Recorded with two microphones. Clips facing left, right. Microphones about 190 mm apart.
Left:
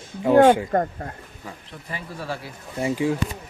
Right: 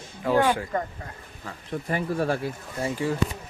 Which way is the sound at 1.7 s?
55° right (ahead or behind).